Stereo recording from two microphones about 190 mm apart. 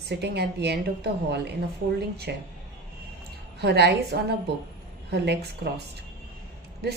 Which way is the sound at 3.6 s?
60° right (ahead or behind).